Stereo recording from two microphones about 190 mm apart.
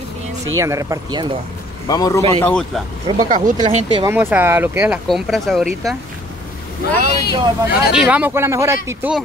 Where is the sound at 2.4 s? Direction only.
5° left (ahead or behind).